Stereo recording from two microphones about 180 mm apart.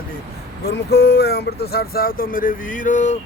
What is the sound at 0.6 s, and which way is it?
Speech, 60° left (ahead or behind).